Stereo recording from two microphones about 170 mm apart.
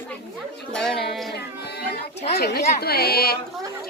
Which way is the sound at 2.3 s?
65° left (ahead or behind).